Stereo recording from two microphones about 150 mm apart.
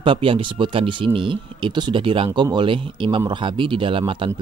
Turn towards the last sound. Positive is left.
turn(degrees=-35)  # may be behind; listen again after turning